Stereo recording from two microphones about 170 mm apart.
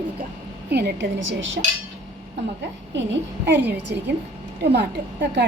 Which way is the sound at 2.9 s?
90° right.